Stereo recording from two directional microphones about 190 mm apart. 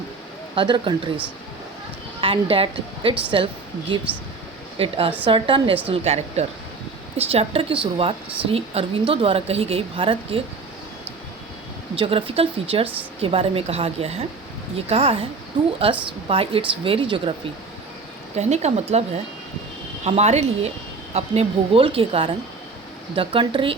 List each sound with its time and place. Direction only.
0.5 s a woman's voice: 25° right (ahead or behind)
2.2 s a woman's voice: 30° right (ahead or behind)
11.9 s a woman's voice: 30° right (ahead or behind)
18.3 s a woman's voice: 35° right (ahead or behind)